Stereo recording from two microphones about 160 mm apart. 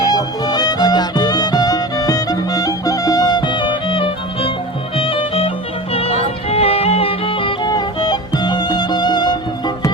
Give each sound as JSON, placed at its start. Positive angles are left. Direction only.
{"t": 0.1, "sound": "music", "side_deg": 25}